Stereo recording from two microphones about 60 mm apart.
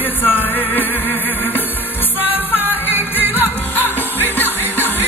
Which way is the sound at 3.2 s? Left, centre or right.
Right.